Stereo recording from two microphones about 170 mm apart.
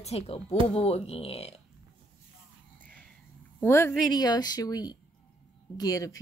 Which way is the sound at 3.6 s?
15° left (ahead or behind).